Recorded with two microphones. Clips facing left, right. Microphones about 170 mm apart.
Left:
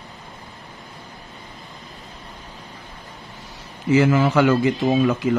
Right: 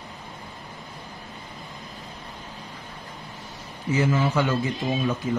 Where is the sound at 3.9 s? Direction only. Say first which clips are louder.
Left 6 dB; 90° left.